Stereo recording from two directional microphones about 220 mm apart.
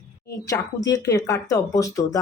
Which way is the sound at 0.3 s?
15° left (ahead or behind).